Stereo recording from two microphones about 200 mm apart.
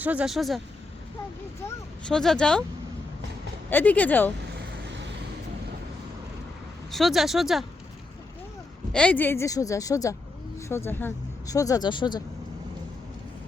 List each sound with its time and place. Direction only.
0.0 s speech: 5° right (ahead or behind)
1.6 s speech: 5° left (ahead or behind)
3.7 s a woman's voice: 10° left (ahead or behind)
4.5 s vehicle: 65° right (ahead or behind)
6.9 s speech: centre (ahead or behind)
8.9 s a woman's voice: 5° left (ahead or behind); by 12.2 s 20° left (ahead or behind)